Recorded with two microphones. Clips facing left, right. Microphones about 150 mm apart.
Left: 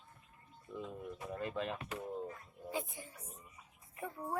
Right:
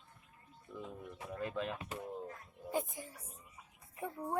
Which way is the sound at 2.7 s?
45° right (ahead or behind).